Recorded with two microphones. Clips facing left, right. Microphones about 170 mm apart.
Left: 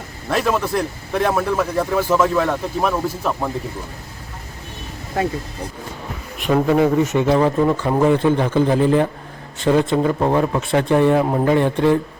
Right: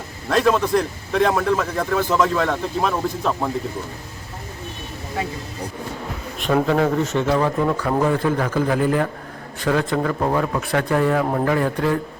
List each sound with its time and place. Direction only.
0.3 s a man's voice: 5° left (ahead or behind)
6.5 s a man's voice: 10° left (ahead or behind)